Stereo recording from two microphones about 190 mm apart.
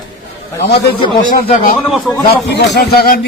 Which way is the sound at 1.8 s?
Centre (ahead or behind).